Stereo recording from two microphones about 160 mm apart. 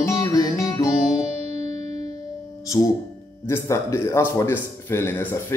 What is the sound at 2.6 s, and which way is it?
Music, 20° left (ahead or behind).